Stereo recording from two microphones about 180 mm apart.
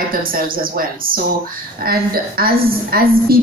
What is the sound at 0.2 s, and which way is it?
A woman's voice, 50° right (ahead or behind).